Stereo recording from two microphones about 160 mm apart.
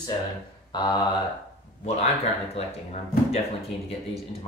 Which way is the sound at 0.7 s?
25° left (ahead or behind).